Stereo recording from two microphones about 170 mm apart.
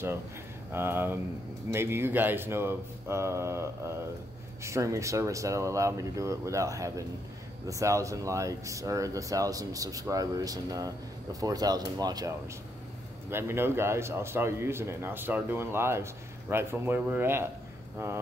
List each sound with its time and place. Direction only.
0.7 s a man's voice: 15° right (ahead or behind)